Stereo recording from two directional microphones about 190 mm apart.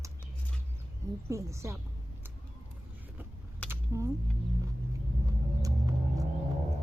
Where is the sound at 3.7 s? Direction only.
15° right (ahead or behind).